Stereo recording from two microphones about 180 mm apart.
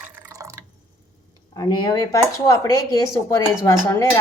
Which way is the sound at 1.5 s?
20° left (ahead or behind).